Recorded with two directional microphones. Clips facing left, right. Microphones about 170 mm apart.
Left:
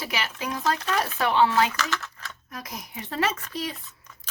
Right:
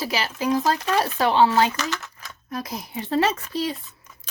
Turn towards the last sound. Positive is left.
turn(degrees=-30)  # may be behind; listen again after turning